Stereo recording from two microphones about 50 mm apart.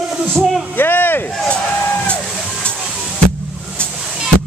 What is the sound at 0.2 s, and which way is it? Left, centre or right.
Speech, right.